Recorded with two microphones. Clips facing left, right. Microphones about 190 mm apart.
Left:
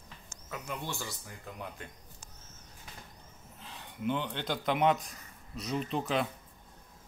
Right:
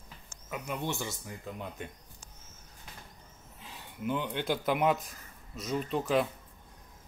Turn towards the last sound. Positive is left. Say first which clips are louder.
# right 3 dB
turn(degrees=0)  # may be behind; listen again after turning